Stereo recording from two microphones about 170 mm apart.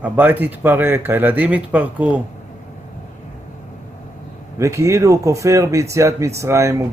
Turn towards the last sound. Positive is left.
turn(degrees=-15)  # may be behind; listen again after turning